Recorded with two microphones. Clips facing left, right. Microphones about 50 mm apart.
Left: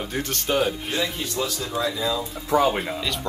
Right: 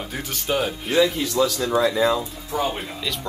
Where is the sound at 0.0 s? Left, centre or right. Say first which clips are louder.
Left 2 dB; centre.